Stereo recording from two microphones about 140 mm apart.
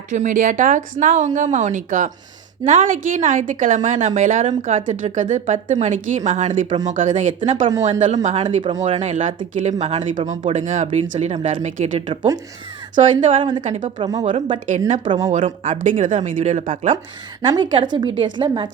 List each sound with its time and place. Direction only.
0.1 s a woman's voice: 65° right (ahead or behind)
11.9 s a woman's voice: 40° right (ahead or behind)
13.6 s a woman's voice: 60° right (ahead or behind)
14.0 s speech: 25° right (ahead or behind)
14.3 s a woman's voice: 60° right (ahead or behind)
17.4 s a woman's voice: 35° right (ahead or behind)